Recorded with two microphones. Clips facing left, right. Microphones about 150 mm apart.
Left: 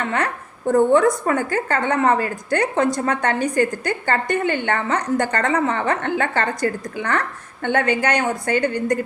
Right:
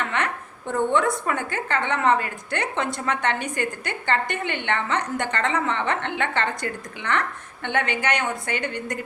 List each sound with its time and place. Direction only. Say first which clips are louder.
0.7 s a woman's voice: left 7 dB; 40° left (ahead or behind)